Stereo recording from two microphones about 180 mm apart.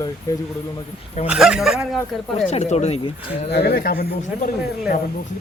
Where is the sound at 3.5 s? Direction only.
65° left (ahead or behind).